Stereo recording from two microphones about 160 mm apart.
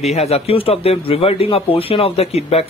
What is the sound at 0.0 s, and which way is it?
Speech, 40° left (ahead or behind).